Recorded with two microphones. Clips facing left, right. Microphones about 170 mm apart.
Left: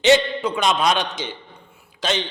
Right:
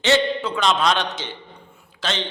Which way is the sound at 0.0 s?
15° left (ahead or behind).